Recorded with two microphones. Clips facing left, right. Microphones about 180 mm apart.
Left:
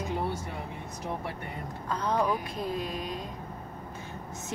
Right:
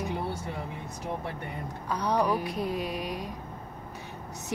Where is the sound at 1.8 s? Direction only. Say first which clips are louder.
Right 1 dB; 15° right (ahead or behind).